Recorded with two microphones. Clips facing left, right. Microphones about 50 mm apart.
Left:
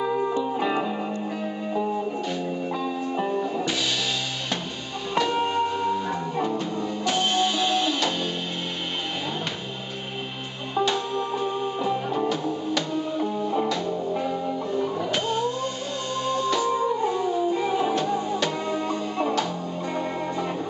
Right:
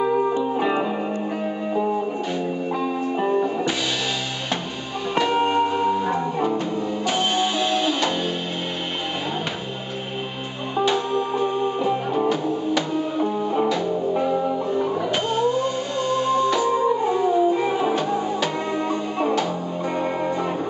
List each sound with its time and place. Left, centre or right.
0.0 s music: centre
5.1 s music: centre
10.8 s music: centre